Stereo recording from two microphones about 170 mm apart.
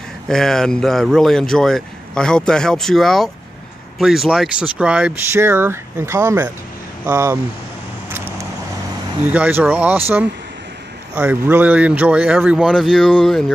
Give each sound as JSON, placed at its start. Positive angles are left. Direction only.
{"t": 0.3, "sound": "speech", "side_deg": 5}
{"t": 8.1, "sound": "vehicle", "side_deg": -15}
{"t": 9.2, "sound": "speech", "side_deg": -10}